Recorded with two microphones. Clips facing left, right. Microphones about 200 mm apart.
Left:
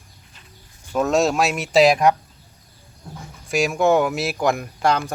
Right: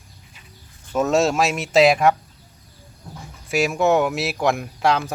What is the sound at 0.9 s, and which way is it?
Speech, centre (ahead or behind).